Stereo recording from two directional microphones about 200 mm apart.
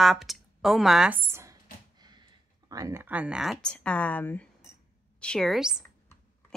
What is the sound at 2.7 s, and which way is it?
A woman's voice, 15° right (ahead or behind).